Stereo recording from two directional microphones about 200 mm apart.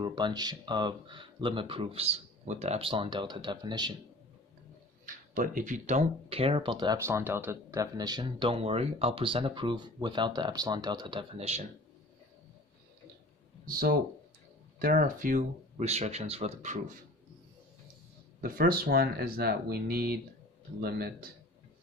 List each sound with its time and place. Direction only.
0.0 s speech: 20° right (ahead or behind)
5.0 s speech: 40° right (ahead or behind)
13.7 s speech: 45° right (ahead or behind)
18.4 s speech: 45° right (ahead or behind)